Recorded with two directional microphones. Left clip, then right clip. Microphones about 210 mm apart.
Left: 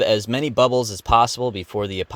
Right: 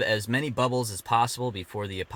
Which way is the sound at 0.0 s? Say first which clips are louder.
Left 7 dB; 30° left (ahead or behind).